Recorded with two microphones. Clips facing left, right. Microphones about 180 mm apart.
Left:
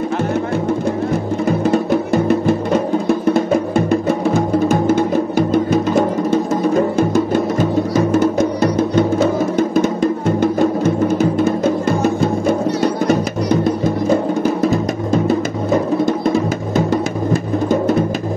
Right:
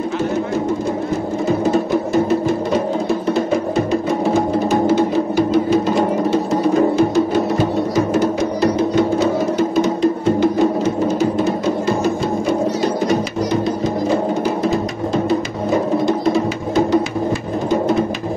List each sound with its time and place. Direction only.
4.6 s music: 50° left (ahead or behind)
16.7 s music: 45° left (ahead or behind)